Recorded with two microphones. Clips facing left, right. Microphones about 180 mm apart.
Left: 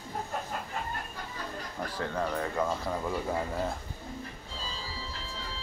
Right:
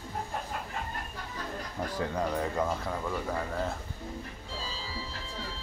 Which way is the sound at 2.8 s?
5° left (ahead or behind).